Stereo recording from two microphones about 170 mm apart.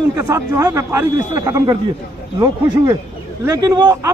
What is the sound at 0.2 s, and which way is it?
A man's voice, 15° right (ahead or behind).